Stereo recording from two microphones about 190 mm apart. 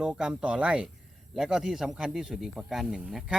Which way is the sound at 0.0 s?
5° right (ahead or behind).